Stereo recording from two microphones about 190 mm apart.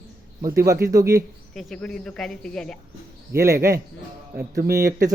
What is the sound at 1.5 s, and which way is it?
Speech, 5° left (ahead or behind).